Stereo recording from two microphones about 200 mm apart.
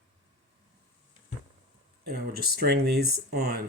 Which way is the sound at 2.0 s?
50° right (ahead or behind).